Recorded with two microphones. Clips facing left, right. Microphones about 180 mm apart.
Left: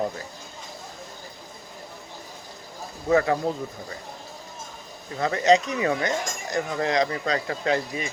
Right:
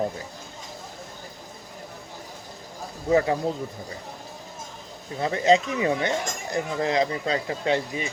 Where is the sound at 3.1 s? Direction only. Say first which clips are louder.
Even; 20° right (ahead or behind).